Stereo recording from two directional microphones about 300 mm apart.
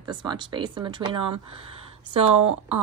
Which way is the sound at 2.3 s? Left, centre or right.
Right.